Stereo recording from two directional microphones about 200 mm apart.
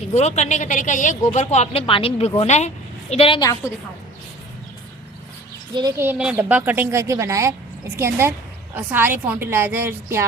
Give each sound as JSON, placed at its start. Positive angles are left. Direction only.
{"t": 0.1, "sound": "a woman's voice", "side_deg": 35}
{"t": 5.7, "sound": "a woman's voice", "side_deg": -15}